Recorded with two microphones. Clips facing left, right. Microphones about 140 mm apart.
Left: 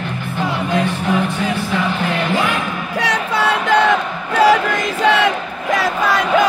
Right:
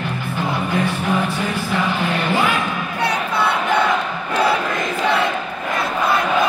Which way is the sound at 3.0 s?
90° left.